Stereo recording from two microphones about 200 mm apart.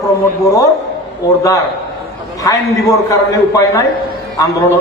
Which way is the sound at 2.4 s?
15° left (ahead or behind).